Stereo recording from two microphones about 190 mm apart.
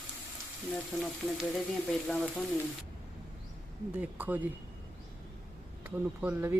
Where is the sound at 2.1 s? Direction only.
5° left (ahead or behind).